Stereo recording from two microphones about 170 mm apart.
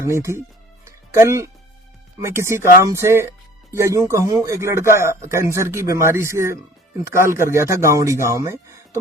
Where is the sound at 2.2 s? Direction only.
15° right (ahead or behind).